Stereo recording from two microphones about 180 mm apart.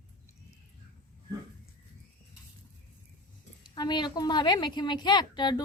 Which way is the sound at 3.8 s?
25° left (ahead or behind).